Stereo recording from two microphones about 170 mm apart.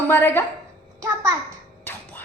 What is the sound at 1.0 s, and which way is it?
Speech, 15° right (ahead or behind).